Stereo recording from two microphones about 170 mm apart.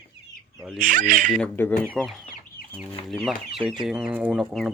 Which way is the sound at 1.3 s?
10° left (ahead or behind).